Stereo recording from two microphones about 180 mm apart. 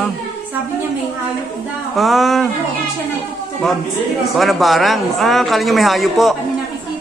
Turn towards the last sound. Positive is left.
turn(degrees=0)  # may be behind; listen again after turning